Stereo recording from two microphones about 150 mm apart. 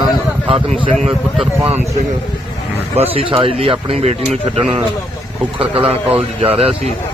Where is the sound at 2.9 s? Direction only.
40° right (ahead or behind).